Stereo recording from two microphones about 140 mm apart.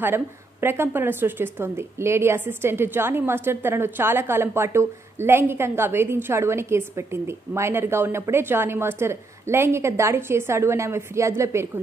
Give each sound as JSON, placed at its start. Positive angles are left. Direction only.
{"t": 0.0, "sound": "a woman's voice", "side_deg": -15}